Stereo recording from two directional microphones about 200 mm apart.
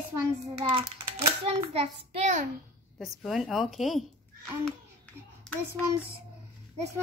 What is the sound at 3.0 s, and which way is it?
A woman's voice, centre (ahead or behind).